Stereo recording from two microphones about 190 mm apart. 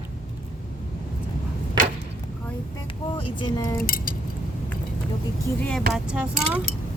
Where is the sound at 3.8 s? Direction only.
50° left (ahead or behind).